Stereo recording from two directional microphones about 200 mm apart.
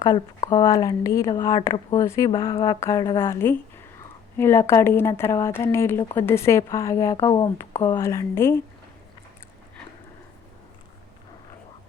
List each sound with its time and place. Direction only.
0.5 s a woman's voice: 20° left (ahead or behind)